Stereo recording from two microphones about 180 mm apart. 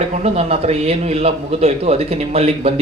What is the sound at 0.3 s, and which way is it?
A man's voice, 35° right (ahead or behind).